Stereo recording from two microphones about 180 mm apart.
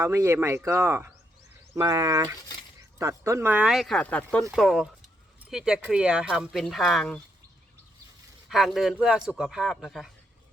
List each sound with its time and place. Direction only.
0.0 s speech: 15° right (ahead or behind); by 7.2 s centre (ahead or behind)
8.4 s speech: centre (ahead or behind)